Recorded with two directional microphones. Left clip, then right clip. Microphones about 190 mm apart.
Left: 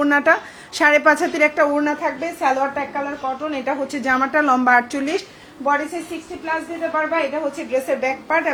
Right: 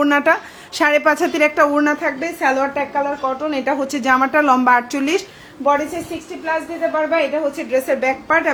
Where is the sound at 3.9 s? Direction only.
25° right (ahead or behind).